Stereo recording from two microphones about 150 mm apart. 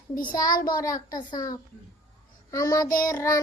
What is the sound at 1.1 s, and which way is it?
Child singing, 30° left (ahead or behind).